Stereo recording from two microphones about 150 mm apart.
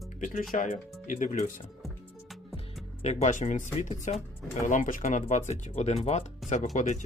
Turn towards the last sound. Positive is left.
turn(degrees=55)  # may be behind; listen again after turning